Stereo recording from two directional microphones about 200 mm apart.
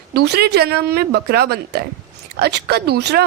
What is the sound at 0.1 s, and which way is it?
Speech, 55° right (ahead or behind).